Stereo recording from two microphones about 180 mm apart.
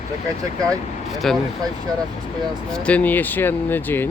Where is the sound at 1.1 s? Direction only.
Centre (ahead or behind).